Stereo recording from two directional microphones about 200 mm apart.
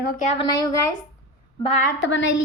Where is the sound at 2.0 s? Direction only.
65° left (ahead or behind).